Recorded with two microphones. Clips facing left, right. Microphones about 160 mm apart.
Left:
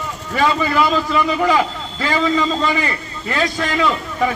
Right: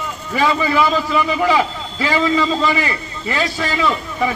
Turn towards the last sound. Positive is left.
turn(degrees=-5)  # may be behind; listen again after turning